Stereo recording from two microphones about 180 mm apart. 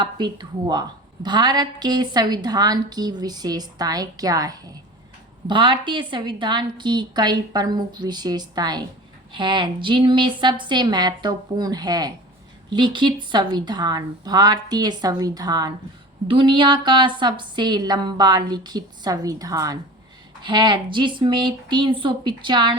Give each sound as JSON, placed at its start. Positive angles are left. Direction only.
{"t": 0.0, "sound": "a woman's voice", "side_deg": -25}